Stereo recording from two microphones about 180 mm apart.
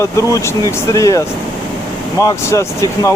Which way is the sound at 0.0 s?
15° left (ahead or behind).